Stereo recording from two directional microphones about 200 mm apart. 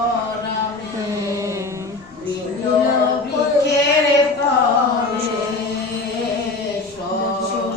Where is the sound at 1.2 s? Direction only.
15° right (ahead or behind).